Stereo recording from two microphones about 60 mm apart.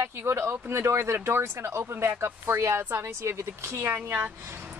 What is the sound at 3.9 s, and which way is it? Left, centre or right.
Speech, right.